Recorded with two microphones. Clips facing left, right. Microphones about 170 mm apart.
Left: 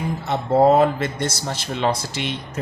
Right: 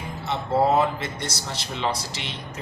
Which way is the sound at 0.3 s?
50° left (ahead or behind).